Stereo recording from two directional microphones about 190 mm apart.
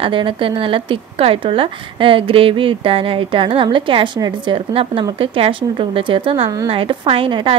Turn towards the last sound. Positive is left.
turn(degrees=-25)  # may be behind; listen again after turning